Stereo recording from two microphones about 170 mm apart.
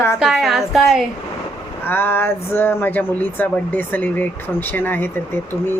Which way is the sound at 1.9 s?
15° left (ahead or behind).